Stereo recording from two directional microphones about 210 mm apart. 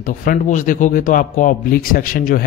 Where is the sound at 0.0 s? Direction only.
40° left (ahead or behind).